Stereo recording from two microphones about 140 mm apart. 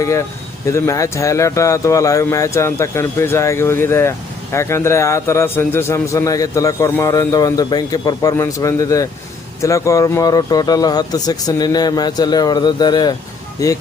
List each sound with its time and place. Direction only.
0.0 s a man's voice: 20° left (ahead or behind)